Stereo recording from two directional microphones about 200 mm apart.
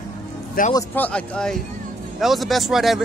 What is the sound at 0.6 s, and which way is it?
Speech, 45° left (ahead or behind).